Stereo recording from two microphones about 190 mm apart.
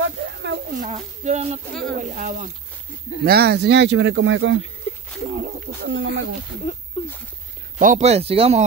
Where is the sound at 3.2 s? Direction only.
55° right (ahead or behind); by 4.5 s 85° right.